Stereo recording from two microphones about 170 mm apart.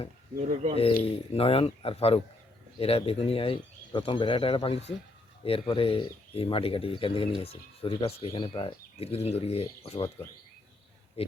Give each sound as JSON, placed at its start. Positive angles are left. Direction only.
{"t": 0.3, "sound": "speech", "side_deg": -40}
{"t": 1.0, "sound": "speech", "side_deg": 35}
{"t": 11.2, "sound": "speech", "side_deg": 35}